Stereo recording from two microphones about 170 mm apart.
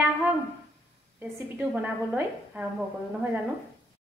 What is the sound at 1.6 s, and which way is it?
A woman's voice, 5° right (ahead or behind).